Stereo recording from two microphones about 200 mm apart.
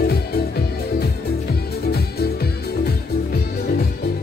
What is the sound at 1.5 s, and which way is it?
Music, 50° left (ahead or behind).